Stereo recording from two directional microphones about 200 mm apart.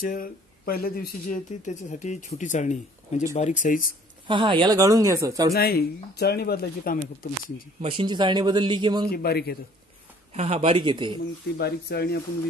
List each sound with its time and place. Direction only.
0.0 s speech: 45° left (ahead or behind)
4.3 s speech: 25° right (ahead or behind)
5.5 s speech: 50° left (ahead or behind)
7.8 s a man's voice: 25° right (ahead or behind)
9.1 s speech: 50° left (ahead or behind)
10.3 s a man's voice: 35° right (ahead or behind)
11.5 s speech: 55° left (ahead or behind)